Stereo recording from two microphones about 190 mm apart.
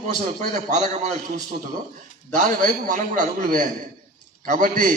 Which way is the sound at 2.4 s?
40° right (ahead or behind).